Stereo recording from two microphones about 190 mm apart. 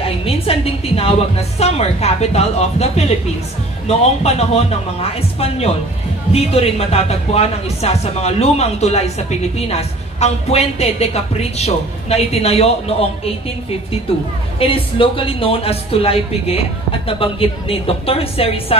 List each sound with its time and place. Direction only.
0.0 s a woman's voice: 30° left (ahead or behind)